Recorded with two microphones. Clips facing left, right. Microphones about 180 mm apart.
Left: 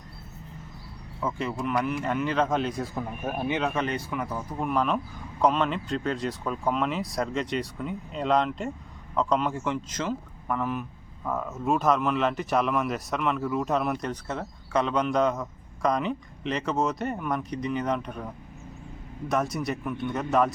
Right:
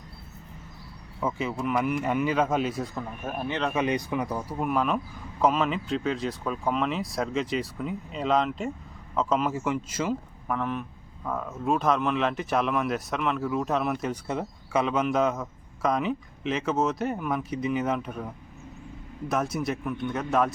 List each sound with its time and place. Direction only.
1.2 s speech: 5° right (ahead or behind)
2.9 s speech: 10° left (ahead or behind)
3.7 s speech: 10° right (ahead or behind)
4.4 s speech: 5° right (ahead or behind)
10.6 s speech: centre (ahead or behind)
19.3 s speech: centre (ahead or behind)